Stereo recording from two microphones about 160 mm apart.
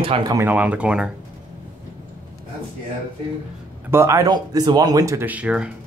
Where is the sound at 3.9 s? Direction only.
15° right (ahead or behind).